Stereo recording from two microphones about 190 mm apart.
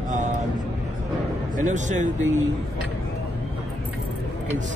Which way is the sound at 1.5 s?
40° right (ahead or behind).